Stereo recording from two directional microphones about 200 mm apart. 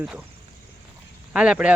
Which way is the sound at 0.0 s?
5° right (ahead or behind).